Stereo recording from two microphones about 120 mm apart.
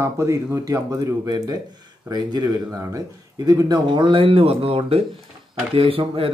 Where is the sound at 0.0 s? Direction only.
20° right (ahead or behind).